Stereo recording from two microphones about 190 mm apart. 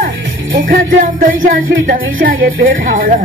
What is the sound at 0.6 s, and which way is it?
Music, 45° right (ahead or behind).